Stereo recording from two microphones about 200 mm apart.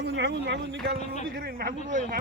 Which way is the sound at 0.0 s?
55° right (ahead or behind).